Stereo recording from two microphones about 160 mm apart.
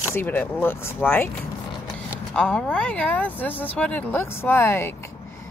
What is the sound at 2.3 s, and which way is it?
Speech, 5° left (ahead or behind).